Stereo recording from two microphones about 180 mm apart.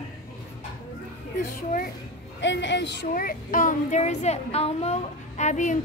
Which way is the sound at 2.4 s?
85° left.